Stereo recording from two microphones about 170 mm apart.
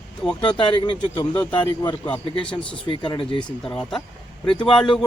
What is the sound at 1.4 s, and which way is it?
A man's voice, 10° left (ahead or behind).